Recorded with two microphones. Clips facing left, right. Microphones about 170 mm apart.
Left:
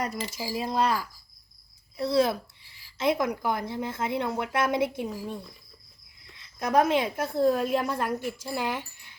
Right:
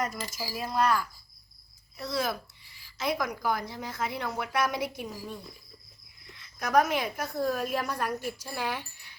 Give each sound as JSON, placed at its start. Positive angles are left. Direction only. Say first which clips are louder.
{"t": 0.0, "sound": "a woman's voice", "louder": "left 2 dB", "side_deg": 30}
{"t": 2.0, "sound": "a woman's voice", "louder": "left 8 dB", "side_deg": 30}
{"t": 6.6, "sound": "a woman's voice", "louder": "left 2 dB", "side_deg": 30}